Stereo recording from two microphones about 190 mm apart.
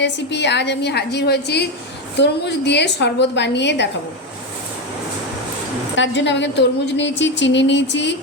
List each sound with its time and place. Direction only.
0.0 s a woman's voice: 65° left (ahead or behind)
6.0 s a woman's voice: 70° left (ahead or behind)